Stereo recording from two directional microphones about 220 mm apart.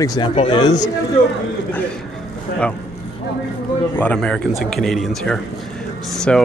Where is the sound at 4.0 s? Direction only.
5° left (ahead or behind).